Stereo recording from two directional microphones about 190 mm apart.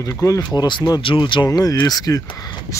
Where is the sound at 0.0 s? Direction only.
15° left (ahead or behind).